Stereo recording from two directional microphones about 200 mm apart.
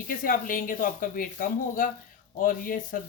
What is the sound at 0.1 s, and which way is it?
A woman's voice, 45° left (ahead or behind).